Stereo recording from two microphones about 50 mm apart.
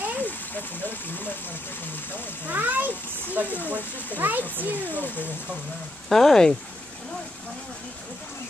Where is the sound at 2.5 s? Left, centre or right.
Right.